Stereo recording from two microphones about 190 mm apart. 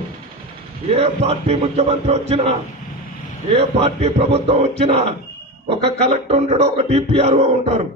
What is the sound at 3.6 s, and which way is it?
A man's voice, 35° right (ahead or behind).